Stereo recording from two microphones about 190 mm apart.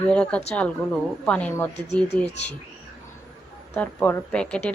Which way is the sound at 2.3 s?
35° left (ahead or behind).